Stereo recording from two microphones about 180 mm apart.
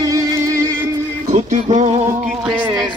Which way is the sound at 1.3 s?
40° right (ahead or behind).